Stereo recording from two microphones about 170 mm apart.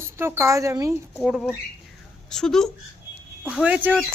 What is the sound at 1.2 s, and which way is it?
Speech, 5° right (ahead or behind).